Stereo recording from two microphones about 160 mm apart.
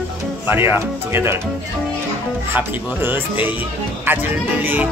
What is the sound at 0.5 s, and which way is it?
Speech, 15° right (ahead or behind).